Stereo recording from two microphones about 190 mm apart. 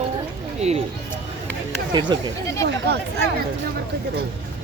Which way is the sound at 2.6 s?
60° right (ahead or behind).